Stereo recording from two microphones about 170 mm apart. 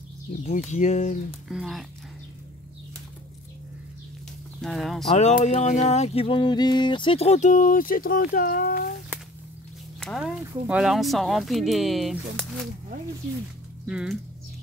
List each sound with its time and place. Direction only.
0.5 s a sound: 45° left (ahead or behind)
1.5 s speech: centre (ahead or behind)
4.6 s speech: centre (ahead or behind)
5.1 s a sound: 45° left (ahead or behind); by 8.9 s 60° left (ahead or behind)
9.9 s speech: 5° left (ahead or behind)
13.8 s speech: 5° right (ahead or behind)